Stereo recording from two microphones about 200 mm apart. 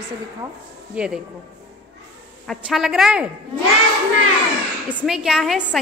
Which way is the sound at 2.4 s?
Centre (ahead or behind).